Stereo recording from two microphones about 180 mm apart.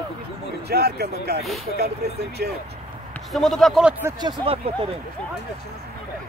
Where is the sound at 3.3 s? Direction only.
Centre (ahead or behind).